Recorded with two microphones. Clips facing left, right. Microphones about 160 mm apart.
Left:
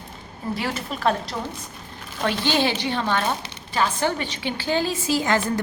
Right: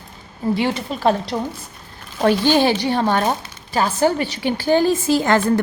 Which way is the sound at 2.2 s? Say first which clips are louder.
Right 7 dB; 45° right (ahead or behind).